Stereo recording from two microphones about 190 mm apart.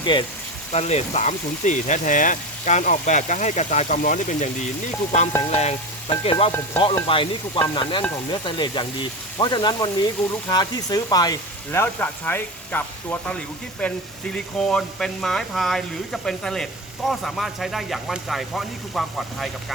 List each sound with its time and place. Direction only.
0.0 s speech: 25° left (ahead or behind)
0.7 s speech: 35° left (ahead or behind)
5.5 s frying: 35° left (ahead or behind)
6.4 s speech: 30° left (ahead or behind)
7.1 s sizzle: 25° left (ahead or behind)
10.5 s speech: 20° left (ahead or behind); by 19.5 s centre (ahead or behind)